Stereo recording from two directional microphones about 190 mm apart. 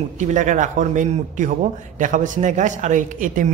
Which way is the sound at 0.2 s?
40° right (ahead or behind).